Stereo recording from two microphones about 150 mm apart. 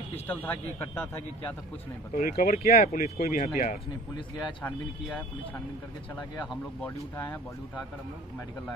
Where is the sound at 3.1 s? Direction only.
70° left (ahead or behind).